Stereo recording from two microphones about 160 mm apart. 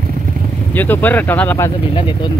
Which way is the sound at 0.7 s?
10° left (ahead or behind).